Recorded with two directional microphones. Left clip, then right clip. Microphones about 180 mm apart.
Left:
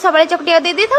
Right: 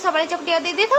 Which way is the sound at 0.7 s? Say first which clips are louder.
Left 4 dB; 20° left (ahead or behind).